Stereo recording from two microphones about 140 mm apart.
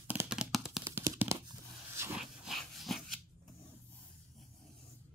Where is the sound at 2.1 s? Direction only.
Centre (ahead or behind).